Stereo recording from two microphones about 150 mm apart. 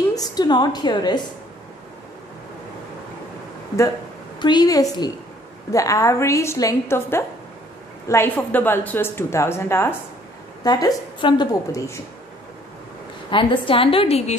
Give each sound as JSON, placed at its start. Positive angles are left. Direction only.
{"t": 0.1, "sound": "a woman's voice", "side_deg": 25}
{"t": 4.4, "sound": "a woman's voice", "side_deg": 30}
{"t": 13.3, "sound": "a woman's voice", "side_deg": 35}